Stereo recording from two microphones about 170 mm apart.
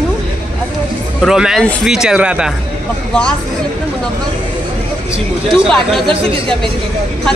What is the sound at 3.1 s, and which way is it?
Speech, 5° left (ahead or behind).